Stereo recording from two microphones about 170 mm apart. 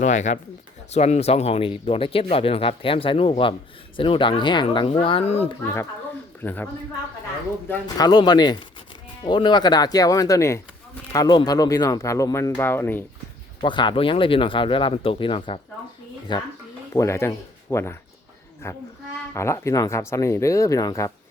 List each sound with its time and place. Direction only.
0.0 s speech: 45° left (ahead or behind)
6.4 s speech: 10° left (ahead or behind)
7.9 s speech: 25° left (ahead or behind)
13.6 s speech: 30° left (ahead or behind)
16.9 s speech: 15° left (ahead or behind)